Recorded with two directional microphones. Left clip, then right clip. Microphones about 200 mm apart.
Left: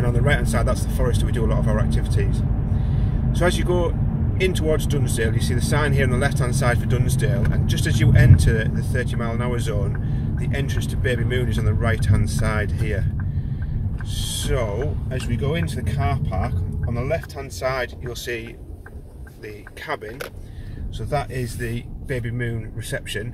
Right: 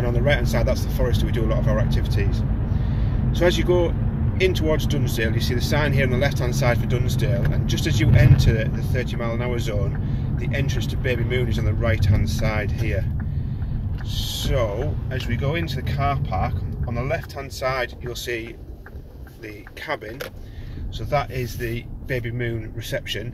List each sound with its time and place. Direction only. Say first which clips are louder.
0.0 s speech: right 1 dB; 20° left (ahead or behind)
14.1 s speech: right 1 dB; 25° left (ahead or behind)
19.9 s speech: even; 20° left (ahead or behind)
21.1 s speech: right 2 dB; 25° left (ahead or behind)